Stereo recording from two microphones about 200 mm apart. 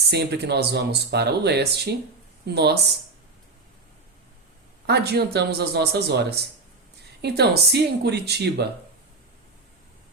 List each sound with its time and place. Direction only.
0.1 s speech: 55° right (ahead or behind)
4.9 s speech: 55° right (ahead or behind)